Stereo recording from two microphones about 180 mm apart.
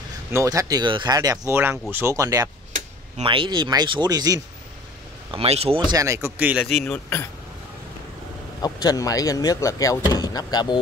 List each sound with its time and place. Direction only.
0.3 s speech: 15° right (ahead or behind)
3.2 s speech: 30° right (ahead or behind)
5.3 s speech: 35° right (ahead or behind)
5.9 s speech: 15° right (ahead or behind); by 7.0 s centre (ahead or behind)
8.5 s speech: 20° left (ahead or behind)